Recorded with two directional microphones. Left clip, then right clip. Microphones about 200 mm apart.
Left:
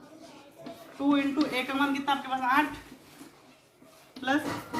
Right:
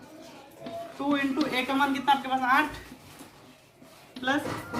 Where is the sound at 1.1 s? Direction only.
20° right (ahead or behind).